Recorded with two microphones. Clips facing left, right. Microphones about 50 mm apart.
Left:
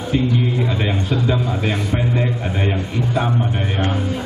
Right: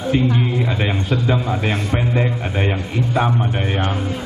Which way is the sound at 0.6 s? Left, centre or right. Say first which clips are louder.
Even; centre.